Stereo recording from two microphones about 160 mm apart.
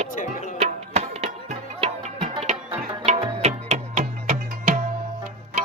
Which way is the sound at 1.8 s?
35° right (ahead or behind).